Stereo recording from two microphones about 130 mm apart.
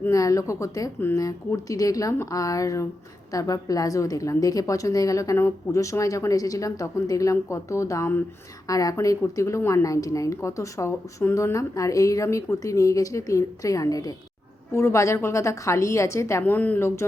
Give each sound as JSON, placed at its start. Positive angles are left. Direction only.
{"t": 0.0, "sound": "a woman's voice", "side_deg": 25}
{"t": 16.4, "sound": "a woman's voice", "side_deg": 10}